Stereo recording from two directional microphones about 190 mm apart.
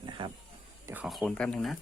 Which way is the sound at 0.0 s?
25° right (ahead or behind).